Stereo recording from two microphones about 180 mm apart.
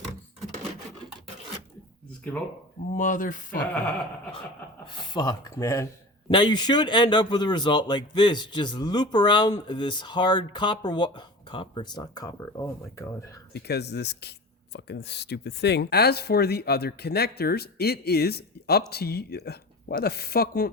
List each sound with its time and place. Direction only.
2.9 s speech: 45° left (ahead or behind)
4.9 s speech: 25° left (ahead or behind)
13.5 s speech: 65° left (ahead or behind)